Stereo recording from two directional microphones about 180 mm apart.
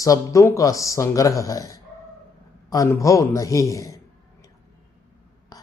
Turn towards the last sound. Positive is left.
turn(degrees=15)  # may be behind; listen again after turning